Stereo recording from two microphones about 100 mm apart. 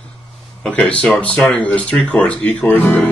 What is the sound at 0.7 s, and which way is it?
Speech, 10° left (ahead or behind).